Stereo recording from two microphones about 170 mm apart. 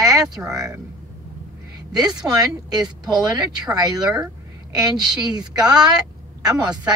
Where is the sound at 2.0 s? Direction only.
25° right (ahead or behind).